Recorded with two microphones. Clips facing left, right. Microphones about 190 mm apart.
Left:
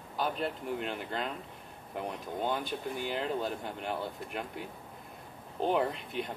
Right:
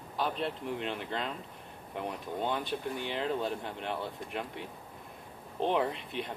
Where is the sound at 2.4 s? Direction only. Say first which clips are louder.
Even; centre (ahead or behind).